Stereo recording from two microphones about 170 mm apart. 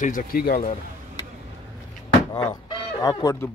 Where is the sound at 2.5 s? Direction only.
20° left (ahead or behind).